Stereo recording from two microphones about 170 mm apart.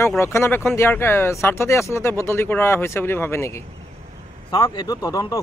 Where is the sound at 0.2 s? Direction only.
15° left (ahead or behind).